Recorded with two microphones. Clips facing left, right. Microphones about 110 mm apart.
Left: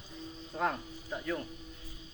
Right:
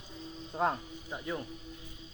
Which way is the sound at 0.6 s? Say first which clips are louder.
Right 2 dB; 20° right (ahead or behind).